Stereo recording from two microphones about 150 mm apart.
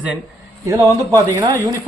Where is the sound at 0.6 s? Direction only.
20° right (ahead or behind).